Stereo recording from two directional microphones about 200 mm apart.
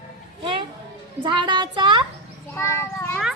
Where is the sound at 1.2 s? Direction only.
25° right (ahead or behind).